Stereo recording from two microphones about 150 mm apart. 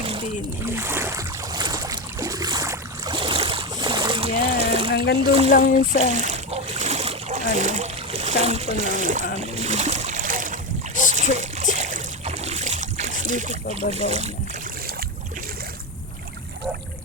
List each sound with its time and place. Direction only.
0.6 s boat: 15° right (ahead or behind); by 4.9 s 40° right (ahead or behind)
5.2 s speech: 35° right (ahead or behind)
5.5 s speech: 65° left (ahead or behind)
6.1 s splash: 50° right (ahead or behind)
9.6 s a sound: 50° right (ahead or behind)
11.1 s boat: 50° right (ahead or behind)
13.7 s speech: 45° right (ahead or behind)